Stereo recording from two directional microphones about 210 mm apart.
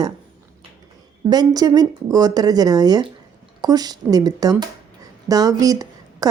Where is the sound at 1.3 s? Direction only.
20° right (ahead or behind).